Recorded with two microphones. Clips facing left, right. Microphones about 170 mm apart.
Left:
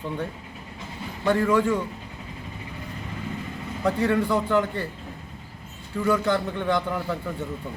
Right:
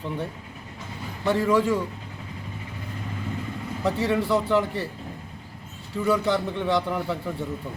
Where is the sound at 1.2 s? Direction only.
5° right (ahead or behind).